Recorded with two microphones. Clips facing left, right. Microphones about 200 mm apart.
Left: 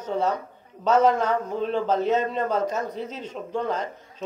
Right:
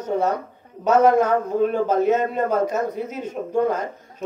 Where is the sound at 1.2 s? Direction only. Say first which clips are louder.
Right 6 dB; 50° right (ahead or behind).